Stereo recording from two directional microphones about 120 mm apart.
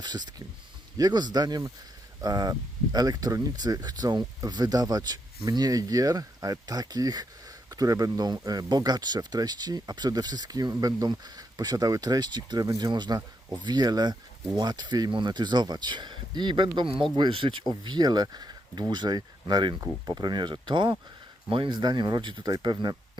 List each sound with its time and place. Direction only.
0.0 s speech: 35° right (ahead or behind)